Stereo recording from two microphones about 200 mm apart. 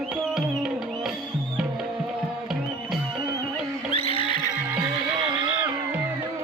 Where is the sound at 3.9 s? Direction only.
30° left (ahead or behind).